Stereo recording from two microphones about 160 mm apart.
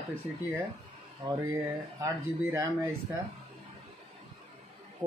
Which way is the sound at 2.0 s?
15° right (ahead or behind).